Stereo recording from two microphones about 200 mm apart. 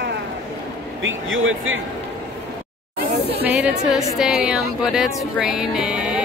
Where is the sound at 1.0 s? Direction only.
80° right.